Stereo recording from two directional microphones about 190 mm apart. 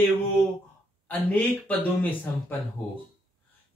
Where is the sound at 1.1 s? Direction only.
10° left (ahead or behind).